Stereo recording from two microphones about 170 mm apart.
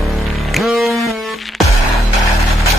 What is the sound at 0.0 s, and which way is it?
Music, centre (ahead or behind).